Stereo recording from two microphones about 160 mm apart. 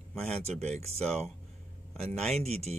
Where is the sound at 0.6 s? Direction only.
40° right (ahead or behind).